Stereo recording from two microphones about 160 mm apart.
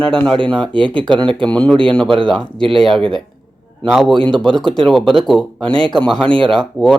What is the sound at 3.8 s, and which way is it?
Speech, centre (ahead or behind).